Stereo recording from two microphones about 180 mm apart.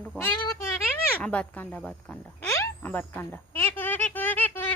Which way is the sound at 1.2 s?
5° left (ahead or behind).